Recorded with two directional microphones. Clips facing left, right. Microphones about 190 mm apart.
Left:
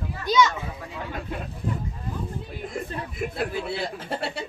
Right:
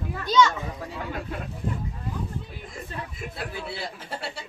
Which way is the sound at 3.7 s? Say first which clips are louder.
Left 5 dB; 60° left (ahead or behind).